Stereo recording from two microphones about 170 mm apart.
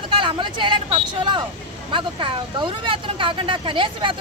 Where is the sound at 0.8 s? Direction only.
30° right (ahead or behind).